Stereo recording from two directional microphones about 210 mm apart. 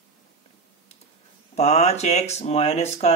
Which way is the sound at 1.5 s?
30° left (ahead or behind).